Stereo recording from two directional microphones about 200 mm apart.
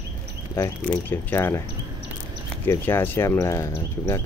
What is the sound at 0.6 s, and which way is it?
Speech, 10° left (ahead or behind).